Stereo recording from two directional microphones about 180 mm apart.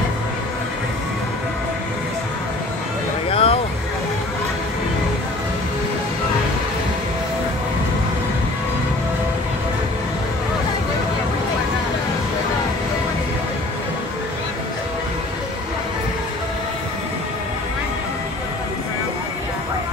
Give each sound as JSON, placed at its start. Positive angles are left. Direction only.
{"t": 3.3, "sound": "vehicle", "side_deg": 30}